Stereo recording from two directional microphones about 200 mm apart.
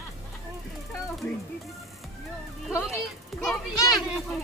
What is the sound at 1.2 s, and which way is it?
Speech, 5° left (ahead or behind).